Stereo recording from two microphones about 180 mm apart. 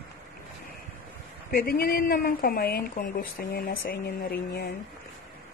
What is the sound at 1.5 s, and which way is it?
Speech, 55° left (ahead or behind).